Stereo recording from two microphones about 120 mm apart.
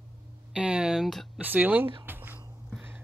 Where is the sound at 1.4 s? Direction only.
15° right (ahead or behind).